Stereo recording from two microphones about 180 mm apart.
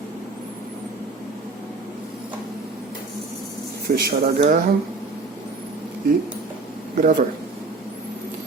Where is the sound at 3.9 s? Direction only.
50° right (ahead or behind).